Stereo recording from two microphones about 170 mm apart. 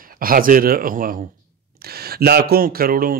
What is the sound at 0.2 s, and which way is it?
Speech, 55° right (ahead or behind).